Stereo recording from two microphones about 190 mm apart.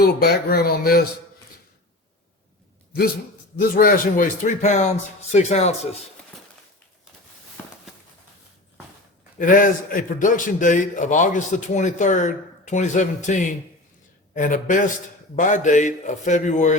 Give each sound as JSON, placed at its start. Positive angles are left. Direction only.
{"t": 0.0, "sound": "speech", "side_deg": 55}
{"t": 3.6, "sound": "a man's voice", "side_deg": 50}
{"t": 9.4, "sound": "a man's voice", "side_deg": 45}